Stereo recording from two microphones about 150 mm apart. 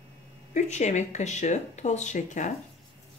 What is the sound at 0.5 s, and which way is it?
Speech, 50° left (ahead or behind).